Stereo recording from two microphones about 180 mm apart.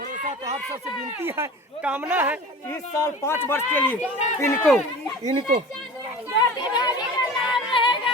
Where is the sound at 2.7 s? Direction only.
15° left (ahead or behind).